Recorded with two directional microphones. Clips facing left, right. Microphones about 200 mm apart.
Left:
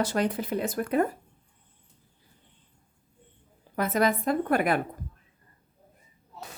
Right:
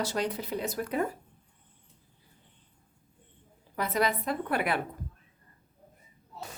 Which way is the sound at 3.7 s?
50° left (ahead or behind).